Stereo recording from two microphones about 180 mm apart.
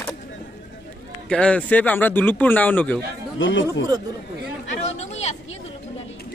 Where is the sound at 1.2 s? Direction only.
5° left (ahead or behind).